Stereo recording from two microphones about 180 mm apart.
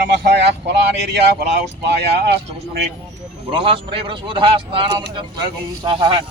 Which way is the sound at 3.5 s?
30° right (ahead or behind).